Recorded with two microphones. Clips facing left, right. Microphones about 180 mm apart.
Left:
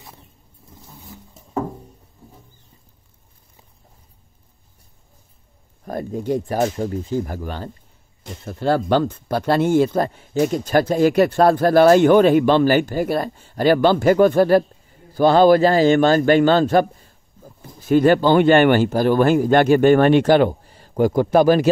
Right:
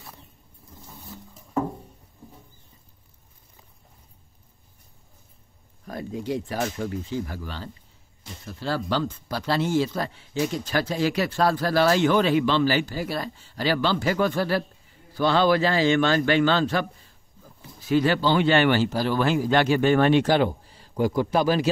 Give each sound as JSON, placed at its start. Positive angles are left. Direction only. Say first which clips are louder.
{"t": 5.9, "sound": "a man's voice", "louder": "left 6 dB", "side_deg": 50}